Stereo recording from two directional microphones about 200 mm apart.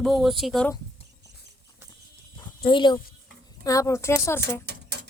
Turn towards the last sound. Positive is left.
turn(degrees=15)  # may be behind; listen again after turning